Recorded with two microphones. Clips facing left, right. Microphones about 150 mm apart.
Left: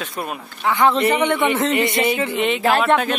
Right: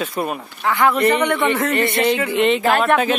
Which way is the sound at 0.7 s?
20° left (ahead or behind).